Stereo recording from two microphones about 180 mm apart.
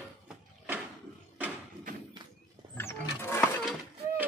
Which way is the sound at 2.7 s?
15° left (ahead or behind).